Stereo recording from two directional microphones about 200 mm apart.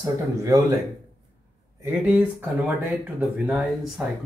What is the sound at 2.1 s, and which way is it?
Speech, 5° right (ahead or behind).